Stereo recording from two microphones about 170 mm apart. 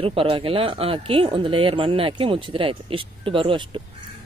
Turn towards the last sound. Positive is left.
turn(degrees=-30)  # may be behind; listen again after turning